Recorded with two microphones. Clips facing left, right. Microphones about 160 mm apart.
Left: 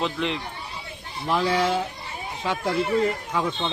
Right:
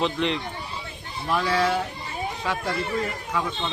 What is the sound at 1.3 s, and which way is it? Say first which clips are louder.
Speech: left 1 dB; 20° left (ahead or behind).